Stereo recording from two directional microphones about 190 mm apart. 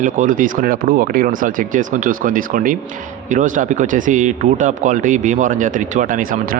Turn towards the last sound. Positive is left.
turn(degrees=-50)  # may be behind; listen again after turning